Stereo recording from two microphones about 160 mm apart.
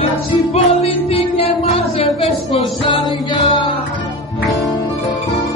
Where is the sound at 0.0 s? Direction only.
40° left (ahead or behind).